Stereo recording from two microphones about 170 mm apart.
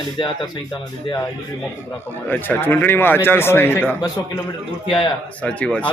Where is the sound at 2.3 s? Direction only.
10° left (ahead or behind).